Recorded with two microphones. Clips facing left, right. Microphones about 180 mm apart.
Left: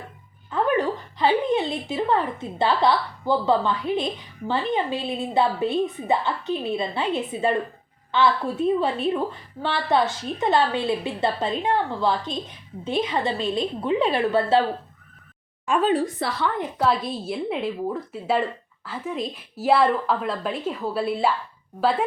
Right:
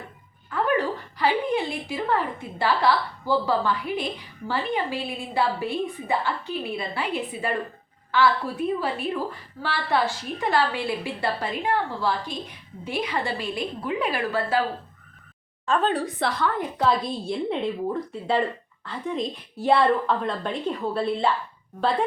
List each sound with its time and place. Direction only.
0.5 s a woman's voice: 20° left (ahead or behind)
15.6 s speech: 15° left (ahead or behind)
15.9 s a woman's voice: centre (ahead or behind)